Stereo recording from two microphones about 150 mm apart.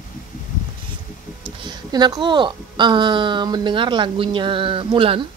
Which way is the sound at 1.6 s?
25° right (ahead or behind).